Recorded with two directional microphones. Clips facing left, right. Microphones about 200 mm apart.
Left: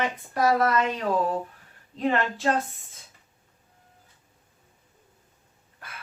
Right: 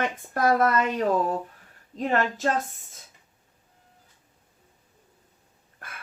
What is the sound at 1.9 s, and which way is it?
Speech, 45° right (ahead or behind).